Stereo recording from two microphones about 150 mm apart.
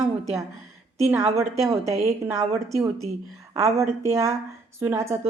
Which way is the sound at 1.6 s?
20° right (ahead or behind).